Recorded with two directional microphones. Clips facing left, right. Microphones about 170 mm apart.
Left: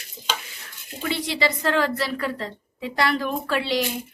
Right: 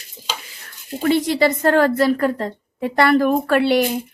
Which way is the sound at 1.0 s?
45° right (ahead or behind).